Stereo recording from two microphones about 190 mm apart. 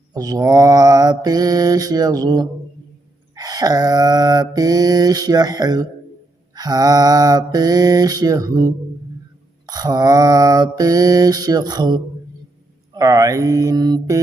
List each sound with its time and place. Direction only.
0.1 s mantra: 20° right (ahead or behind)